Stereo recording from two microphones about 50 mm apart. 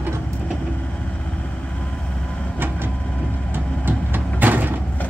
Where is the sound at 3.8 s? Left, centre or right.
Right.